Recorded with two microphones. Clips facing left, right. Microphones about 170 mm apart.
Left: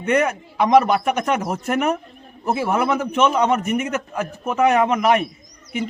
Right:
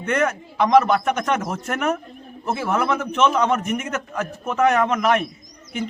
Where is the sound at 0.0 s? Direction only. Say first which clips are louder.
Left 2 dB; 10° left (ahead or behind).